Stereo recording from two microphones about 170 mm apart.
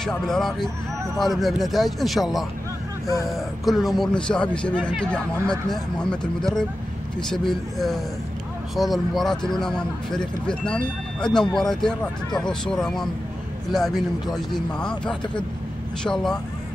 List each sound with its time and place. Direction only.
0.0 s speech: centre (ahead or behind)